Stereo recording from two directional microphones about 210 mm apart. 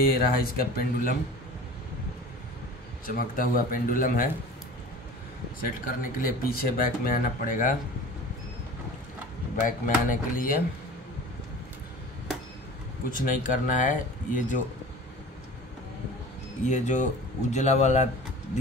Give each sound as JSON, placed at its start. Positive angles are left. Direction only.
{"t": 0.0, "sound": "speech", "side_deg": 45}
{"t": 3.1, "sound": "speech", "side_deg": 40}
{"t": 5.9, "sound": "speech", "side_deg": 40}
{"t": 9.7, "sound": "speech", "side_deg": 40}
{"t": 13.1, "sound": "speech", "side_deg": 40}
{"t": 16.6, "sound": "speech", "side_deg": 35}